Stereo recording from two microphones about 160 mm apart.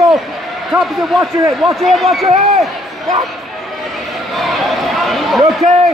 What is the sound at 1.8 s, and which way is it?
Speech, centre (ahead or behind).